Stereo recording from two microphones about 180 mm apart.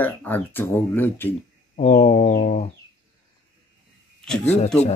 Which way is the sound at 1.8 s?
40° left (ahead or behind).